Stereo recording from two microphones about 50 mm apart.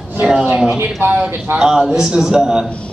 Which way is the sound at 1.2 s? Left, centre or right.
Right.